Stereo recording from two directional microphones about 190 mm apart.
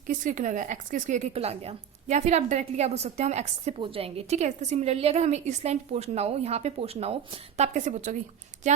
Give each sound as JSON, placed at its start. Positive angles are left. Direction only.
{"t": 0.1, "sound": "a woman's voice", "side_deg": -40}